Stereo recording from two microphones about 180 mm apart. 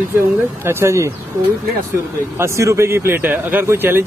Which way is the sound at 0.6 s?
15° right (ahead or behind).